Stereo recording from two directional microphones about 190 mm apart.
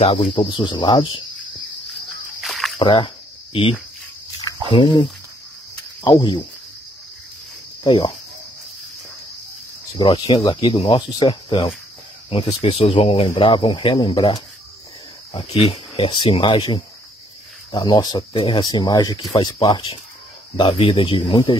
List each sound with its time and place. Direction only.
0.0 s speech: 30° left (ahead or behind)
2.4 s a sound: centre (ahead or behind)
2.8 s speech: 30° left (ahead or behind)
4.4 s a sound: 20° left (ahead or behind)
6.0 s speech: 25° left (ahead or behind)
7.8 s cricket: 25° left (ahead or behind)
9.9 s speech: 20° left (ahead or behind)
15.7 s speech: 25° left (ahead or behind)